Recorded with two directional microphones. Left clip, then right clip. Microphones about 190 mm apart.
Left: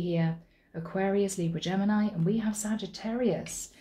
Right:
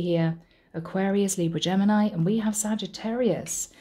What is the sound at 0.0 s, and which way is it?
A woman's voice, 55° right (ahead or behind).